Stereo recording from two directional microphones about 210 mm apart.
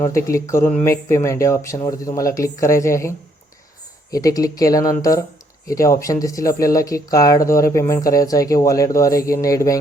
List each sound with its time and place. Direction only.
0.0 s speech: 15° left (ahead or behind)
4.1 s speech: 15° left (ahead or behind)